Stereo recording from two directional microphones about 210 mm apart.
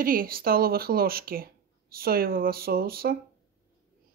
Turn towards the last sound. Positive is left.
turn(degrees=-45)  # may be behind; listen again after turning